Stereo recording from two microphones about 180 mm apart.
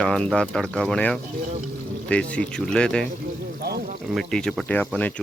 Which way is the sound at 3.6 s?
60° right (ahead or behind).